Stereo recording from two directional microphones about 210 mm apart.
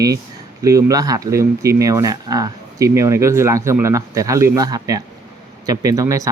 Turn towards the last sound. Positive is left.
turn(degrees=-15)  # may be behind; listen again after turning